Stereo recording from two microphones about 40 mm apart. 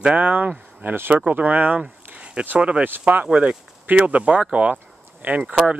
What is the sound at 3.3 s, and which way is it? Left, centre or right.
Speech, right.